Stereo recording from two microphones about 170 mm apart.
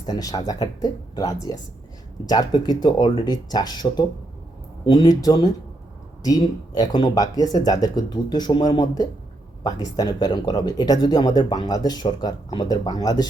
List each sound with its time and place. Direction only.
0.0 s speech: 20° left (ahead or behind)